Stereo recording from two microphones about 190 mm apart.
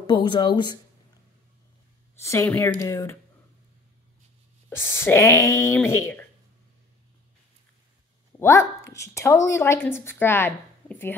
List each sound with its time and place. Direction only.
0.0 s speech: 25° left (ahead or behind)
2.1 s a woman's voice: 15° left (ahead or behind)
4.6 s a woman's voice: 15° left (ahead or behind)
8.4 s a woman's voice: 15° left (ahead or behind)